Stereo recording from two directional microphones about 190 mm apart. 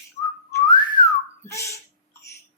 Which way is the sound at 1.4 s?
15° left (ahead or behind).